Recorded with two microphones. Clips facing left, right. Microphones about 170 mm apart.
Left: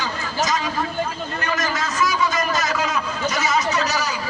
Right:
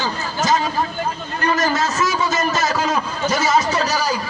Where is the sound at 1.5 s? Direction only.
30° right (ahead or behind).